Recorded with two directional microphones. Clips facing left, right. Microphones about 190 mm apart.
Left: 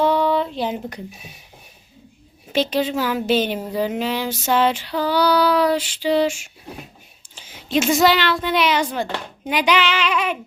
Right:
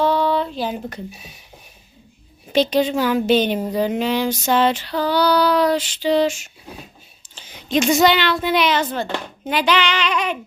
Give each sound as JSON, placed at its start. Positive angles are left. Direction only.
{"t": 0.0, "sound": "a sound", "side_deg": 15}
{"t": 0.5, "sound": "speech", "side_deg": 20}
{"t": 2.5, "sound": "a woman's voice", "side_deg": 5}
{"t": 3.7, "sound": "female singing", "side_deg": 5}
{"t": 7.3, "sound": "speech", "side_deg": 5}
{"t": 8.6, "sound": "female singing", "side_deg": 10}